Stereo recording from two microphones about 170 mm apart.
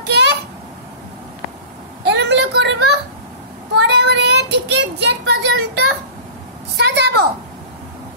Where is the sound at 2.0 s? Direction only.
85° right.